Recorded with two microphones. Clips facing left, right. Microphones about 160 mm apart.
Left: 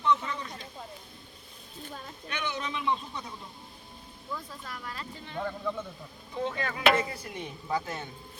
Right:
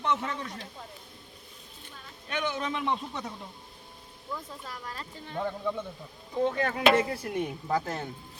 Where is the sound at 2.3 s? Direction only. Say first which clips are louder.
Right 4 dB; 45° right (ahead or behind).